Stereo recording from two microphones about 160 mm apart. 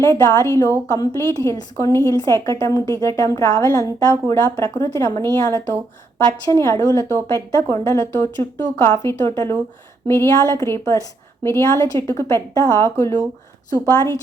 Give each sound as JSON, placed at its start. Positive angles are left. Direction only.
{"t": 0.0, "sound": "a woman's voice", "side_deg": 15}